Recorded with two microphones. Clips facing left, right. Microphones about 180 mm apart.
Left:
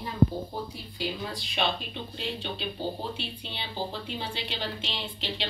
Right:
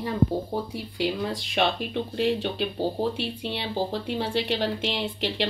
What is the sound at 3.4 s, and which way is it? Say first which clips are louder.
Speech: right 7 dB; 75° right (ahead or behind).